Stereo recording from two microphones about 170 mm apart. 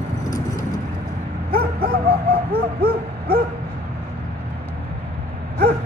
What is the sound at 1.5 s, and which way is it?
Bow-wow, 60° right (ahead or behind).